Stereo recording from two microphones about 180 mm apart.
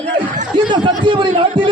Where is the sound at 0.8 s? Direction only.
25° right (ahead or behind).